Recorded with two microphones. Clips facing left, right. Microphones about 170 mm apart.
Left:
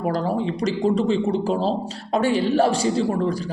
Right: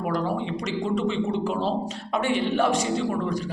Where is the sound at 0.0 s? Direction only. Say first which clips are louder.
Left 4 dB; 35° left (ahead or behind).